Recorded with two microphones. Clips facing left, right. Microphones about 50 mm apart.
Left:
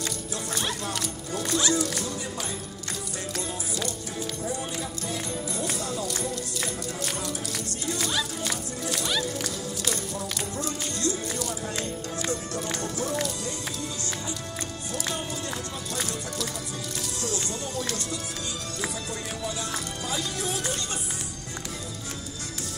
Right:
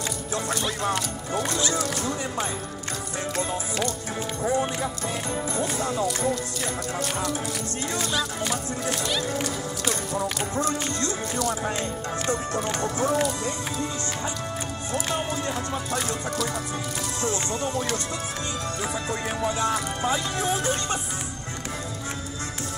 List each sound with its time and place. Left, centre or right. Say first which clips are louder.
0.8 s music: right 5 dB; right
4.4 s music: right 10 dB; right
7.9 s music: right 1 dB; right
9.0 s speech: right 2 dB; right
11.7 s music: right 3 dB; right
14.9 s music: right 5 dB; right
17.2 s music: right 6 dB; right
19.0 s music: right 6 dB; right